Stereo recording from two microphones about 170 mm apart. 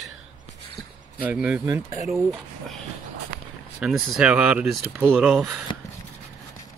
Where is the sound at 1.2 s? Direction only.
10° right (ahead or behind).